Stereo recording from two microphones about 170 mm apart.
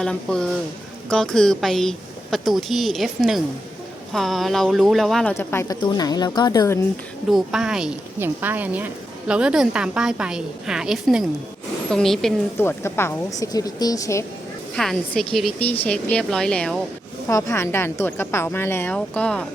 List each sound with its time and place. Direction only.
0.0 s a woman's voice: 5° left (ahead or behind)
5.3 s a woman's voice: 15° left (ahead or behind)
7.3 s a woman's voice: centre (ahead or behind)
12.5 s a woman's voice: 15° left (ahead or behind)
14.8 s a woman's voice: centre (ahead or behind)
17.2 s a woman's voice: 15° left (ahead or behind)